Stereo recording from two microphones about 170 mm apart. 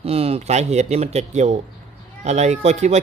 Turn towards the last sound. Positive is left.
turn(degrees=-40)  # may be behind; listen again after turning